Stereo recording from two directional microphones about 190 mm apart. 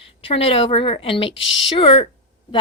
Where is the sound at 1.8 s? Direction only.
30° left (ahead or behind).